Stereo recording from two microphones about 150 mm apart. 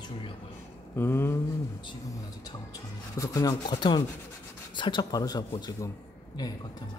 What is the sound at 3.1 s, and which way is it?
A man's voice, 25° left (ahead or behind).